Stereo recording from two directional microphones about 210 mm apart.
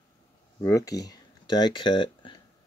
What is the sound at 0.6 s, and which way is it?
Speech, 15° left (ahead or behind).